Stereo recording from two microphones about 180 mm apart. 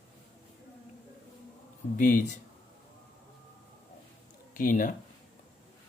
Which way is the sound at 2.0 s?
45° left (ahead or behind).